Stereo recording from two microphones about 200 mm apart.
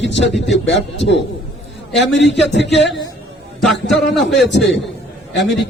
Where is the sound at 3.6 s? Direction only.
Centre (ahead or behind).